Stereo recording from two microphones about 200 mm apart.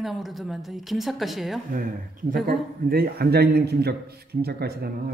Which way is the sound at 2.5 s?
50° right (ahead or behind).